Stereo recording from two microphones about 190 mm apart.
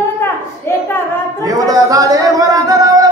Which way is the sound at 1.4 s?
20° right (ahead or behind).